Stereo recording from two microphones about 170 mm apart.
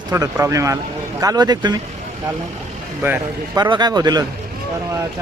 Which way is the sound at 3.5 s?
25° right (ahead or behind).